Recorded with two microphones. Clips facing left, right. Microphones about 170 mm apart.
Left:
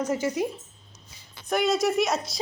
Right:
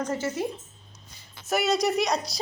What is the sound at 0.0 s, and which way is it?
Speech, 10° left (ahead or behind).